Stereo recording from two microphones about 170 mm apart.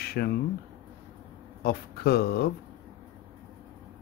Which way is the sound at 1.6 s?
65° left (ahead or behind).